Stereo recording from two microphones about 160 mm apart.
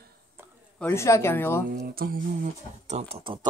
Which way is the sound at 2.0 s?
65° right (ahead or behind).